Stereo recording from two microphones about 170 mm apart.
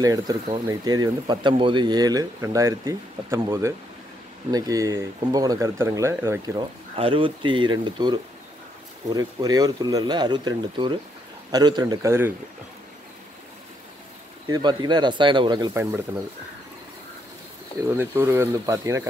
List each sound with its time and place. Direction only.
0.0 s speech: 20° right (ahead or behind)
7.0 s speech: 30° right (ahead or behind); by 12.4 s 15° right (ahead or behind)
14.5 s speech: 25° right (ahead or behind)
17.8 s speech: 15° right (ahead or behind)